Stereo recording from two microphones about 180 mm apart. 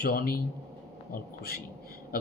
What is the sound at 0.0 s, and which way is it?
Speech, 55° left (ahead or behind).